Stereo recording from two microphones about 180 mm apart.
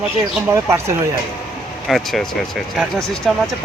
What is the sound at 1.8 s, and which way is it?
Speech, centre (ahead or behind).